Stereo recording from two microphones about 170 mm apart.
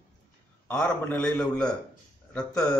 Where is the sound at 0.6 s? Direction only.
10° left (ahead or behind).